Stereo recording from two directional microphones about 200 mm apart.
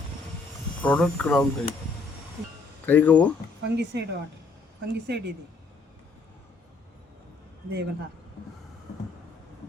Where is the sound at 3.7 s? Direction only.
60° right (ahead or behind).